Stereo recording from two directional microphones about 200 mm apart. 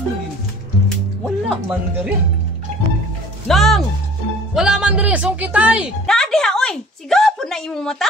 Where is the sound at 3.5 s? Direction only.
Centre (ahead or behind).